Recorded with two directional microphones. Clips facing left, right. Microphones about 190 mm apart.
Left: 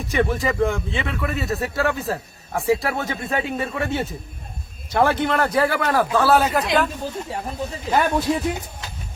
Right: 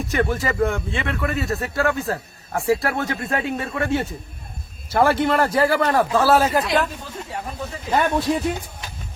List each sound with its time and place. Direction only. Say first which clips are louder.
0.1 s a man's voice: left 2 dB; centre (ahead or behind)
5.5 s a man's voice: right 2 dB; 25° right (ahead or behind)
6.0 s a man's voice: left 1 dB; centre (ahead or behind)
7.9 s a man's voice: even; centre (ahead or behind)